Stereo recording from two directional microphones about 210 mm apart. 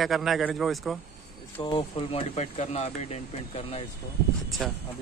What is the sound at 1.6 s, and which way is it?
Speech, 25° left (ahead or behind).